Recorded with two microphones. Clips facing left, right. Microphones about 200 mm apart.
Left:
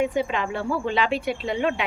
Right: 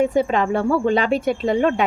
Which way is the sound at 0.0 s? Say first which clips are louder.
Right 6 dB; 40° right (ahead or behind).